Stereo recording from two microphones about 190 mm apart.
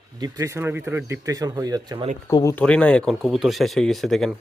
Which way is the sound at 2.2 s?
15° left (ahead or behind).